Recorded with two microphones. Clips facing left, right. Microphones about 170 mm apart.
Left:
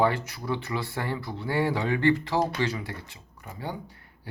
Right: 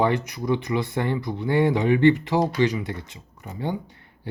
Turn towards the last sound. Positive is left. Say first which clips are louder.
# right 6 dB
turn(degrees=-20)  # may be behind; listen again after turning